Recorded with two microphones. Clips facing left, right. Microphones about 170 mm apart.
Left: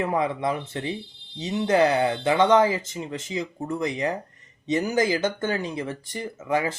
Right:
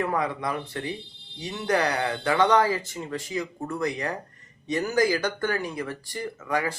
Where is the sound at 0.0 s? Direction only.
20° left (ahead or behind).